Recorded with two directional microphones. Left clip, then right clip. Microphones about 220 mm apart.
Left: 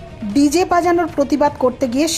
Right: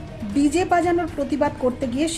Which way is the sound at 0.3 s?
15° left (ahead or behind).